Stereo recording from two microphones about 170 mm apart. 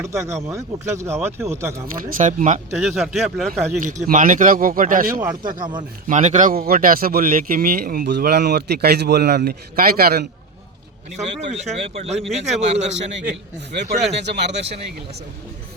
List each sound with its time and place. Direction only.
0.0 s speech: 15° right (ahead or behind)
2.0 s a man's voice: 50° right (ahead or behind)
2.9 s speech: 5° right (ahead or behind)
3.8 s a man's voice: 50° right (ahead or behind)
5.2 s a man's voice: 20° right (ahead or behind)
6.1 s a man's voice: 45° right (ahead or behind); by 10.2 s 65° right (ahead or behind)
11.5 s speech: 40° right (ahead or behind)
13.0 s a man's voice: 90° right
13.8 s speech: 40° right (ahead or behind)
14.1 s a man's voice: 90° right